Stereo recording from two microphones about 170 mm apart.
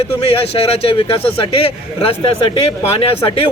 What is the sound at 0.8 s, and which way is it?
Speech, 35° left (ahead or behind).